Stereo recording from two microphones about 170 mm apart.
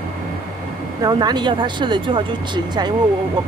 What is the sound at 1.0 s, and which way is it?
Speech, 25° right (ahead or behind).